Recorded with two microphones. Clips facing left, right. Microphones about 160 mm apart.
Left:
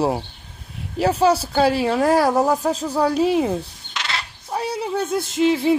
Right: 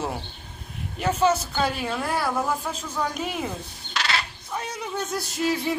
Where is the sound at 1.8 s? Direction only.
85° left.